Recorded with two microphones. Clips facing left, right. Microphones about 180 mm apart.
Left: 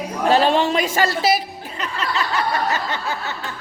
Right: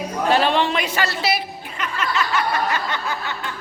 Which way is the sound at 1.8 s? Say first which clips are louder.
Right 1 dB; 35° left (ahead or behind).